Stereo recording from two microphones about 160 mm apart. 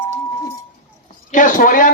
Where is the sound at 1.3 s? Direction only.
55° left (ahead or behind).